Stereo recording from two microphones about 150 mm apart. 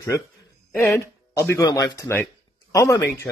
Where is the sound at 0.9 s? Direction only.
20° left (ahead or behind).